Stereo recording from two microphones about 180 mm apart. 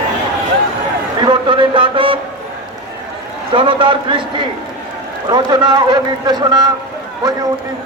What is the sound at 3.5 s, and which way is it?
Speech, 30° right (ahead or behind).